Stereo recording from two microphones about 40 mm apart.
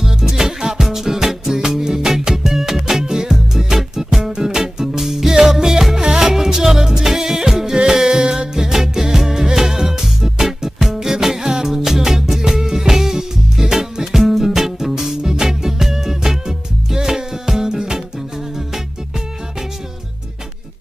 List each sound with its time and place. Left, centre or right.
0.0 s music: centre